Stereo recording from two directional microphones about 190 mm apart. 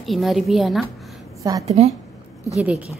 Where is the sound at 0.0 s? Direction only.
Centre (ahead or behind).